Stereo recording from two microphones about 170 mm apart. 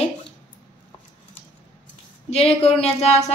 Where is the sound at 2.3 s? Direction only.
35° left (ahead or behind).